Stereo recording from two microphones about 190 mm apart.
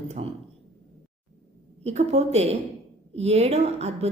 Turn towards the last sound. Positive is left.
turn(degrees=-35)  # may be behind; listen again after turning